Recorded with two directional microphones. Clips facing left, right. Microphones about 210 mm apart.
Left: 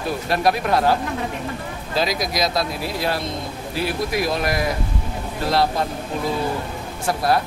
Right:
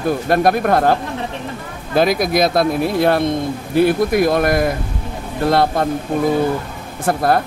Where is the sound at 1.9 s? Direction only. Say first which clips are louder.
Right 8 dB; 55° right (ahead or behind).